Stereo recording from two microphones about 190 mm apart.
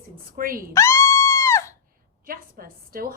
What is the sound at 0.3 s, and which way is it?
Speech, 50° right (ahead or behind).